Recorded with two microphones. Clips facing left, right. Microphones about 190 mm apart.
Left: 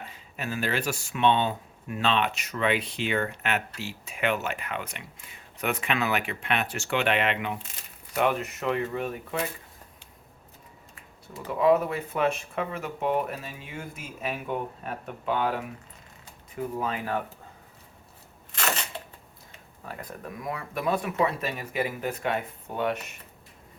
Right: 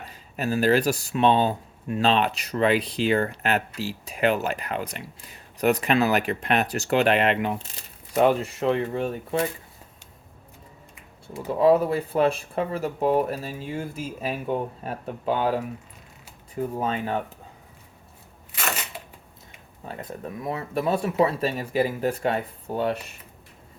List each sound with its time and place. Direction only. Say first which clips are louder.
0.0 s speech: right 6 dB; 40° right (ahead or behind)
11.6 s speech: right 3 dB; 30° right (ahead or behind)
16.7 s speech: right 2 dB; 30° right (ahead or behind)
19.8 s speech: right 4 dB; 25° right (ahead or behind)